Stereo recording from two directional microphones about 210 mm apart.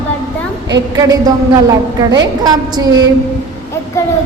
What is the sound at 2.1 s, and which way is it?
Speech, 20° right (ahead or behind).